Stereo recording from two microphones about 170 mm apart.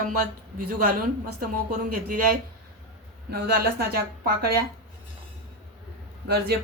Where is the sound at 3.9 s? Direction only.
60° right (ahead or behind).